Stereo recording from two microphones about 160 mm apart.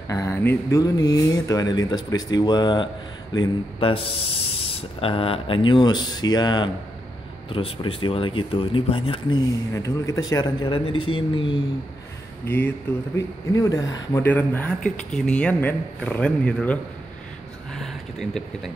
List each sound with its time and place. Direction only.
0.1 s speech: 15° left (ahead or behind)
9.7 s speech: 20° left (ahead or behind)
12.4 s a man's voice: 10° left (ahead or behind)
13.5 s speech: 20° left (ahead or behind)
14.2 s a man's voice: 10° left (ahead or behind)
17.7 s a sound: centre (ahead or behind)